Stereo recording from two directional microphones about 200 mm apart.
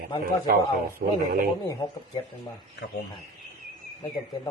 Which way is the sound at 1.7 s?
20° left (ahead or behind).